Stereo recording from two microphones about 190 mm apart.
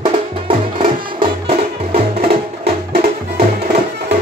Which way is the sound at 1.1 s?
30° right (ahead or behind).